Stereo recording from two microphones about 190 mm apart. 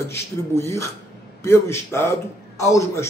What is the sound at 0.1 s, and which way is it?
A man's voice, 15° left (ahead or behind).